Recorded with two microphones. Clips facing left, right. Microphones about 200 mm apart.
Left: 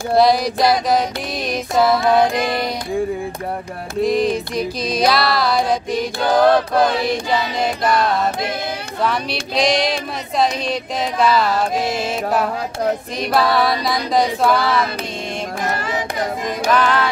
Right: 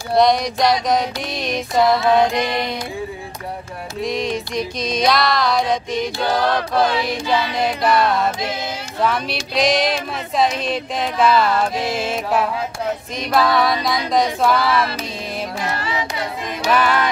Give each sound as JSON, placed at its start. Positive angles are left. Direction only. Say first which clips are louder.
{"t": 0.1, "sound": "music", "louder": "left 1 dB", "side_deg": 5}
{"t": 4.0, "sound": "music", "louder": "left 5 dB", "side_deg": 0}
{"t": 6.4, "sound": "a sound", "louder": "left 5 dB", "side_deg": 50}
{"t": 7.6, "sound": "music", "louder": "right 1 dB", "side_deg": 0}
{"t": 9.0, "sound": "music", "louder": "right 1 dB", "side_deg": 0}
{"t": 15.6, "sound": "a sound", "louder": "left 3 dB", "side_deg": 50}
{"t": 16.7, "sound": "music", "louder": "even", "side_deg": -10}